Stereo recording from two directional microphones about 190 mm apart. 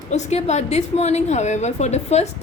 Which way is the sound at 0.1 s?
35° left (ahead or behind).